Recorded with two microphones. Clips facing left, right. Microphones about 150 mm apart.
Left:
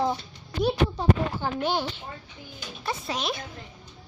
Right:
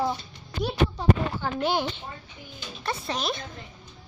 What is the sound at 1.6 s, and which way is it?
Speech, 10° right (ahead or behind).